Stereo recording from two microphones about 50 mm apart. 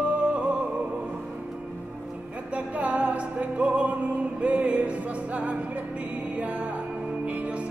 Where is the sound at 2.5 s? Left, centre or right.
Right.